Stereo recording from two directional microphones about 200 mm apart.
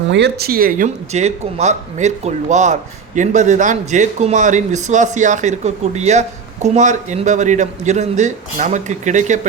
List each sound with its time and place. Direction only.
0.1 s a man's voice: 55° right (ahead or behind); by 9.5 s 35° right (ahead or behind)